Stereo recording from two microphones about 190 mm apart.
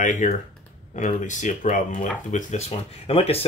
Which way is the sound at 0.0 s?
40° left (ahead or behind).